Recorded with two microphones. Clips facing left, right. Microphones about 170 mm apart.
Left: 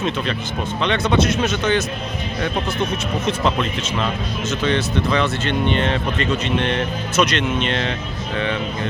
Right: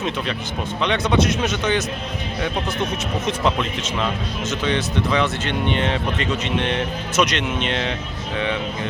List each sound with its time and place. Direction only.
0.8 s speech: 15° right (ahead or behind)
3.2 s speech: 15° right (ahead or behind)